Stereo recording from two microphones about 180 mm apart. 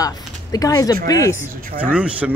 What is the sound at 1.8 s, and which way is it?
Speech, 5° right (ahead or behind).